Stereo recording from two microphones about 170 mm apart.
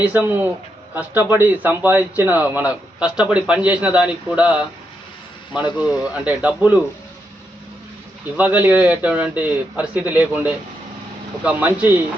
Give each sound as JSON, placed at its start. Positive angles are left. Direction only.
{"t": 0.0, "sound": "a man's voice", "side_deg": -10}
{"t": 5.7, "sound": "a man's voice", "side_deg": -10}
{"t": 8.4, "sound": "a man's voice", "side_deg": -10}